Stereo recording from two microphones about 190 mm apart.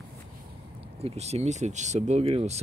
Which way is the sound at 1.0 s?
35° right (ahead or behind).